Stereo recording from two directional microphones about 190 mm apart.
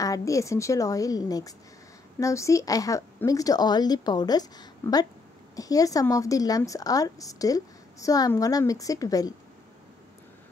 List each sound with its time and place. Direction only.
0.0 s a woman's voice: 15° left (ahead or behind)